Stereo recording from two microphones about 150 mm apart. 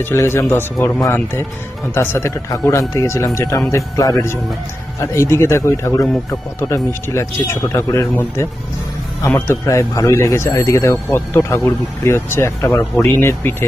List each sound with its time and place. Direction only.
0.0 s speech: 15° left (ahead or behind)